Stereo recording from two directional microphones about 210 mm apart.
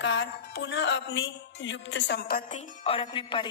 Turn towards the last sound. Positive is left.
turn(degrees=25)  # may be behind; listen again after turning